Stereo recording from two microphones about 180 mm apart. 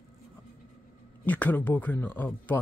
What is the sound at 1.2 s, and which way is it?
Speech, 10° left (ahead or behind).